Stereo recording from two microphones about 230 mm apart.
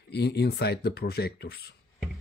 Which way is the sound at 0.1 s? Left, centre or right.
Left.